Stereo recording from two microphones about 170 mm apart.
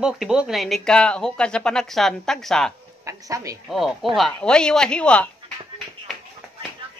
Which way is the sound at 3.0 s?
20° right (ahead or behind).